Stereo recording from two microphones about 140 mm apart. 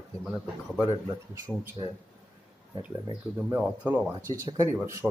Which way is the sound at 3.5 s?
10° right (ahead or behind).